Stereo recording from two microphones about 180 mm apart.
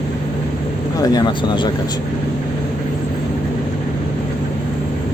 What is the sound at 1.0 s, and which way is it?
Speech, 25° left (ahead or behind).